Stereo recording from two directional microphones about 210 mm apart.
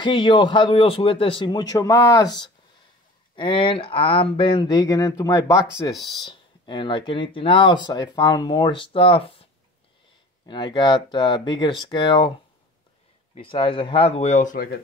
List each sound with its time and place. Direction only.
0.0 s speech: 25° left (ahead or behind)
13.3 s speech: 25° left (ahead or behind)